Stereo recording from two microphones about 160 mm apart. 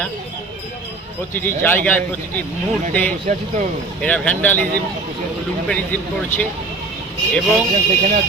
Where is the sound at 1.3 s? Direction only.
10° left (ahead or behind).